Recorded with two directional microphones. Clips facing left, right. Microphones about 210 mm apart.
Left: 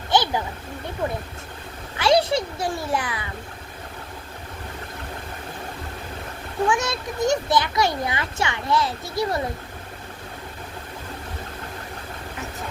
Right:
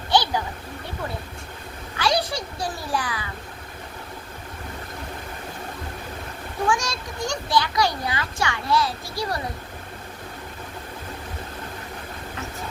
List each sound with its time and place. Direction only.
0.1 s a sound: 20° left (ahead or behind)
2.0 s a child's voice: 25° left (ahead or behind)
6.7 s a child's voice: 20° left (ahead or behind)